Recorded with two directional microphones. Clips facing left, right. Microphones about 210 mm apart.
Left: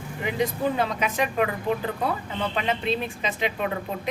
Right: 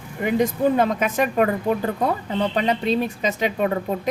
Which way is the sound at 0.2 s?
45° right (ahead or behind).